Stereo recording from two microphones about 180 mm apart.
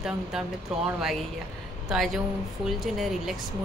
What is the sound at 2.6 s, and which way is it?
Speech, centre (ahead or behind).